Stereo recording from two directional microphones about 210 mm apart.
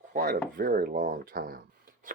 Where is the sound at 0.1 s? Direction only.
40° right (ahead or behind).